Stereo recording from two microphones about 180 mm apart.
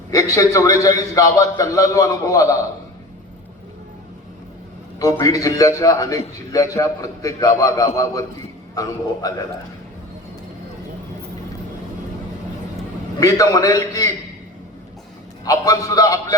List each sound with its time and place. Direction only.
0.1 s a man's voice: 20° left (ahead or behind)
4.9 s a man's voice: 20° left (ahead or behind)
13.1 s a man's voice: 20° left (ahead or behind)
15.4 s a man's voice: 20° left (ahead or behind)